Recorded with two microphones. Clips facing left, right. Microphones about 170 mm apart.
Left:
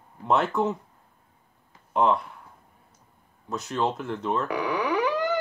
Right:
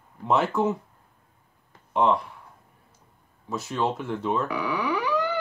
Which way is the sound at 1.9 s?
Centre (ahead or behind).